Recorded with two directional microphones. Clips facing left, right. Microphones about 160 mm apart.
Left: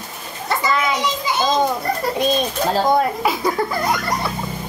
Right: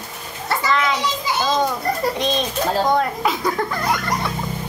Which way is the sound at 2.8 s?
10° left (ahead or behind).